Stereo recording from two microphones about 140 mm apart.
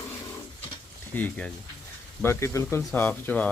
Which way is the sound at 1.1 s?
10° left (ahead or behind).